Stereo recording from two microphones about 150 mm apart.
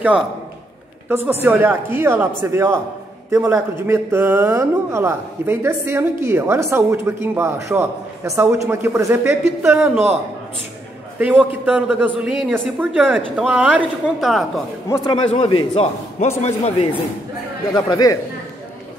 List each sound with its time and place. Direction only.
1.0 s a woman's voice: 10° right (ahead or behind)
11.1 s a man's voice: 10° right (ahead or behind)
14.9 s a man's voice: 35° left (ahead or behind)
17.7 s a man's voice: 30° left (ahead or behind)